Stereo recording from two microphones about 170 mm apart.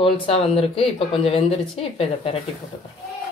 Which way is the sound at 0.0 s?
35° left (ahead or behind).